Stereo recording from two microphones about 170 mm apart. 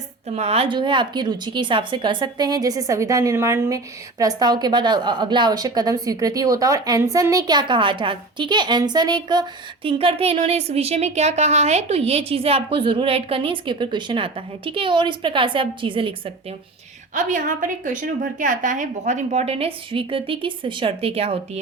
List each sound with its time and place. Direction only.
0.3 s a woman's voice: 35° right (ahead or behind)
17.2 s a woman's voice: 50° right (ahead or behind)